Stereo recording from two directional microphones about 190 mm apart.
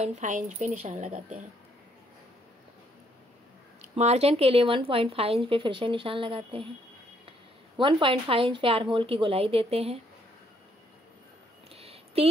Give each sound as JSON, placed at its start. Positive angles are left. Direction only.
{"t": 0.0, "sound": "a woman's voice", "side_deg": -40}
{"t": 3.8, "sound": "speech", "side_deg": -35}
{"t": 7.7, "sound": "a woman's voice", "side_deg": -30}
{"t": 11.7, "sound": "a sound", "side_deg": -30}